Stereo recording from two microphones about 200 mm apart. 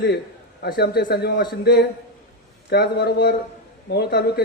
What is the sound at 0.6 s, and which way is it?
A man's voice, 55° left (ahead or behind).